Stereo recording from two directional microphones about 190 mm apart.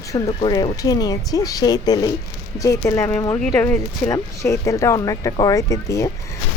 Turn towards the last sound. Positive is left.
turn(degrees=15)  # may be behind; listen again after turning